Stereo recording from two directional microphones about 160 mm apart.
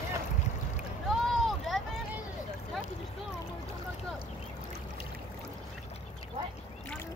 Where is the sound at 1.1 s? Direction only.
Centre (ahead or behind).